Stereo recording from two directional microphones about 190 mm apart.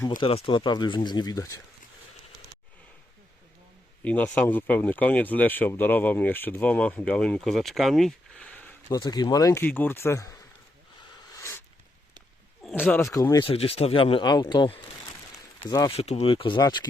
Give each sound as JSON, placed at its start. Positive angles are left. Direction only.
{"t": 0.2, "sound": "speech", "side_deg": 30}
{"t": 4.0, "sound": "speech", "side_deg": 5}
{"t": 9.0, "sound": "speech", "side_deg": 20}
{"t": 11.3, "sound": "a sound", "side_deg": 15}
{"t": 12.6, "sound": "speech", "side_deg": 10}
{"t": 13.4, "sound": "speech", "side_deg": 30}
{"t": 16.0, "sound": "speech", "side_deg": 35}